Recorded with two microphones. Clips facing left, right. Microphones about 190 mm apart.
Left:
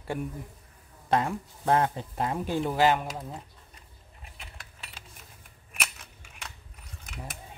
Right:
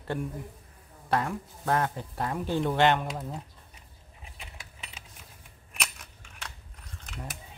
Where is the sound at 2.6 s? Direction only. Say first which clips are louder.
Even; 5° left (ahead or behind).